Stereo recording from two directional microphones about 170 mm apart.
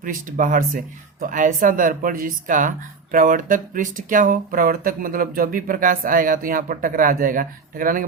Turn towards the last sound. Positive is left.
turn(degrees=-55)  # may be behind; listen again after turning